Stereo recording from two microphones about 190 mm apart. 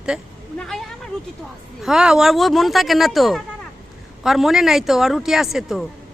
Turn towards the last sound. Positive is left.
turn(degrees=0)  # may be behind; listen again after turning